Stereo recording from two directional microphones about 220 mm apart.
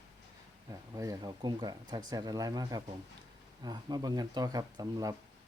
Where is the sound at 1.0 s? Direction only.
15° right (ahead or behind).